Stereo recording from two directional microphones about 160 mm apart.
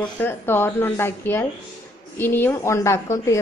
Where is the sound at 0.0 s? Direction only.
10° left (ahead or behind).